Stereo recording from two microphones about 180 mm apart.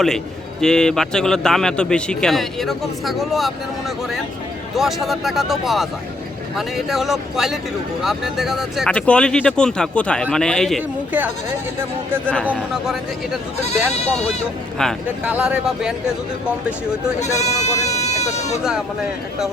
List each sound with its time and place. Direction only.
0.6 s a man's voice: 5° left (ahead or behind)
12.5 s a man's voice: 5° right (ahead or behind)
13.6 s speech: 35° left (ahead or behind)
14.8 s a man's voice: 5° left (ahead or behind)
17.2 s speech: 15° left (ahead or behind)
17.9 s speech: 40° left (ahead or behind)